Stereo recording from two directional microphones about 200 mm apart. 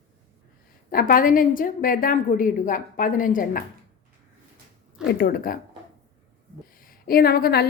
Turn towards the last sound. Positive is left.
turn(degrees=50)  # may be behind; listen again after turning